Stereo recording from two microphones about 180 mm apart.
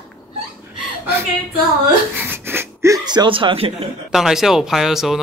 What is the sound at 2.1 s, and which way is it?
Speech, 10° right (ahead or behind).